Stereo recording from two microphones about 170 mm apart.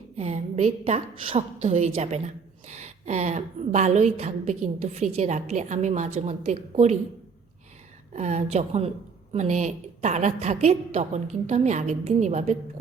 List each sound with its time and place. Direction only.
0.2 s a woman's voice: 40° right (ahead or behind)
8.1 s a woman's voice: 40° right (ahead or behind)